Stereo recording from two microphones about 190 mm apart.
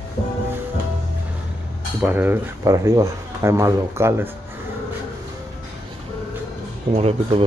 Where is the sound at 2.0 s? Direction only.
10° right (ahead or behind).